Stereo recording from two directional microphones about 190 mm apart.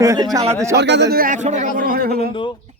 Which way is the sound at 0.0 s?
15° right (ahead or behind).